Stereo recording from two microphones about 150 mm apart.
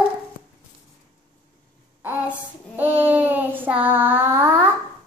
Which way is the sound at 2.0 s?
10° right (ahead or behind).